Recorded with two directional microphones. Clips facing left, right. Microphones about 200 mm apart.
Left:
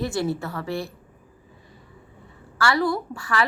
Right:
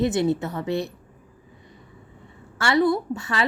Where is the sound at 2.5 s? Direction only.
20° right (ahead or behind).